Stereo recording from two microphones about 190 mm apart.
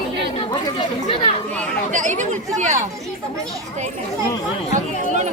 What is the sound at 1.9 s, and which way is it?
Chatter, 40° right (ahead or behind).